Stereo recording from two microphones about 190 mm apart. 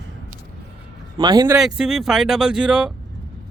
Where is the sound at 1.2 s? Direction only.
20° right (ahead or behind).